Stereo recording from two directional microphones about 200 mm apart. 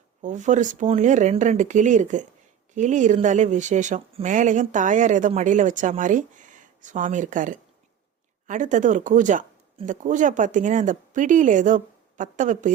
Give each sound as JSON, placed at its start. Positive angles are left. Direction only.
{"t": 0.2, "sound": "speech", "side_deg": -40}